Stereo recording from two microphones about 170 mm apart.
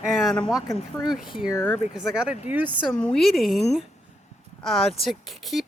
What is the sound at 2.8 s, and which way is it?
Speech, 5° left (ahead or behind).